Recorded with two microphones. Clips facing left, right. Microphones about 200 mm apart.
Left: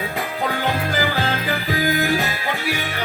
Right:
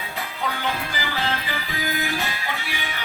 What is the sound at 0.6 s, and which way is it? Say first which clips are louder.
Music: left 6 dB; 45° left (ahead or behind).